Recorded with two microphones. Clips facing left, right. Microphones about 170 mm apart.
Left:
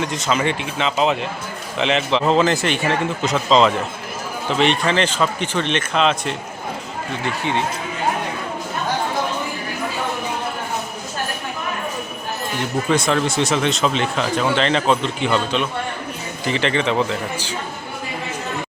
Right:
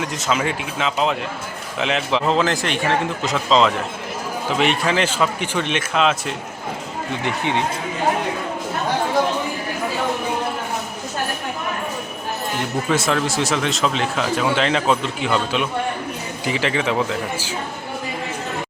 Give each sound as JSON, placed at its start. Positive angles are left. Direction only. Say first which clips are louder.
{"t": 0.0, "sound": "a man's voice", "louder": "left 1 dB", "side_deg": 0}
{"t": 7.3, "sound": "speech", "louder": "even", "side_deg": -20}
{"t": 12.9, "sound": "a man's voice", "louder": "left 2 dB", "side_deg": -5}